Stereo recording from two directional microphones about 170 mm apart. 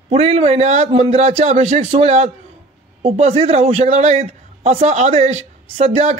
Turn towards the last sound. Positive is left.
turn(degrees=-40)  # may be behind; listen again after turning